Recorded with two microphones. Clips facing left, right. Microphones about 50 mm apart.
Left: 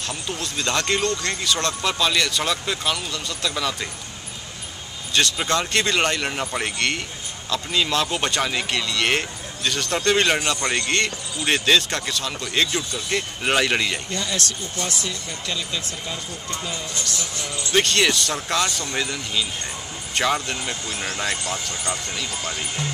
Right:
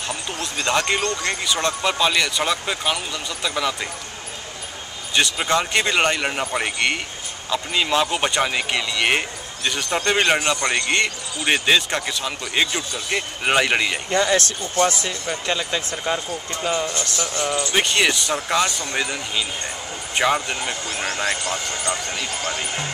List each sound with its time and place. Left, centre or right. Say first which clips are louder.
0.3 s speech: right 3 dB; centre
5.1 s speech: right 2 dB; centre
14.1 s speech: right 8 dB; right
17.7 s speech: left 2 dB; centre